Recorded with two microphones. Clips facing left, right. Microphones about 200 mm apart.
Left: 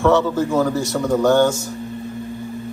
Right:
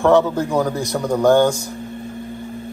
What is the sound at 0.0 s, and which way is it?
Speech, 15° right (ahead or behind).